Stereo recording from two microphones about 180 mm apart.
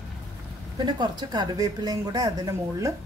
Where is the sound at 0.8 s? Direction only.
25° right (ahead or behind).